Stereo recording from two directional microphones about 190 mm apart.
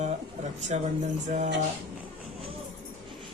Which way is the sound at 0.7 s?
35° right (ahead or behind).